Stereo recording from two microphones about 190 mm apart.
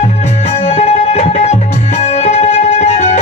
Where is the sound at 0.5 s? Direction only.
35° left (ahead or behind).